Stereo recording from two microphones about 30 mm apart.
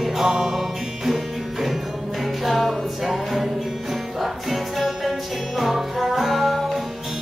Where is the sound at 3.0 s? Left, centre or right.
Centre.